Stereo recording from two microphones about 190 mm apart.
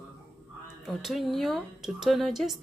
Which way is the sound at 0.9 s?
Centre (ahead or behind).